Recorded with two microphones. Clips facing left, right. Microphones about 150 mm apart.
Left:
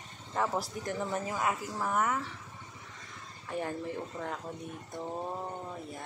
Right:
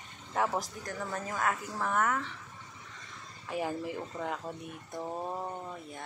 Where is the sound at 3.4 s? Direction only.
5° right (ahead or behind).